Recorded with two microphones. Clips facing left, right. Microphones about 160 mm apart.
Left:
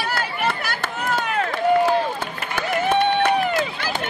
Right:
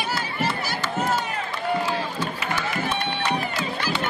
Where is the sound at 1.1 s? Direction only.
65° left (ahead or behind).